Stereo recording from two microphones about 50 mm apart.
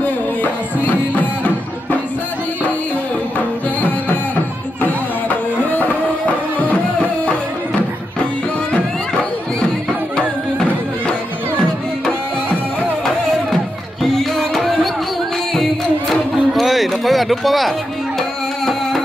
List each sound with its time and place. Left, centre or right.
0.8 s music: left
5.7 s music: left
10.1 s music: centre
14.0 s music: centre